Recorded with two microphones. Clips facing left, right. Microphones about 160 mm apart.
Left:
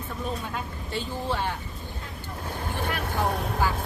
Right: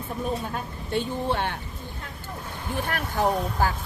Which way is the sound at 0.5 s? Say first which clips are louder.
Right 4 dB; 55° right (ahead or behind).